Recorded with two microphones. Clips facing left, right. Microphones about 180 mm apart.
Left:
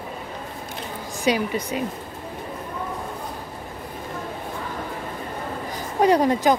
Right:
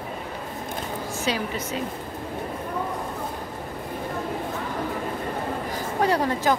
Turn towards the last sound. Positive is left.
turn(degrees=15)  # may be behind; listen again after turning